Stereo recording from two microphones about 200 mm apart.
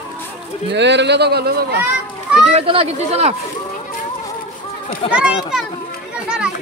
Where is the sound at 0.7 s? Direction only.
60° right (ahead or behind).